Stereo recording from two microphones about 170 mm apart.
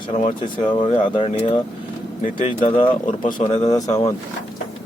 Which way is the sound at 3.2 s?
30° left (ahead or behind).